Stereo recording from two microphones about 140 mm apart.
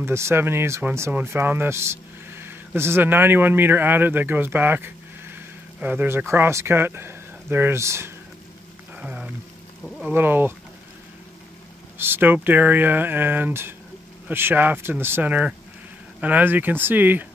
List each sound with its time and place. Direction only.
0.0 s speech: 20° right (ahead or behind)
8.9 s a sound: 10° right (ahead or behind)
10.0 s speech: 15° right (ahead or behind)
12.0 s speech: 15° right (ahead or behind)